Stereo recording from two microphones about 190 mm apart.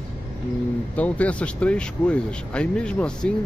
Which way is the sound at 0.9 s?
5° left (ahead or behind).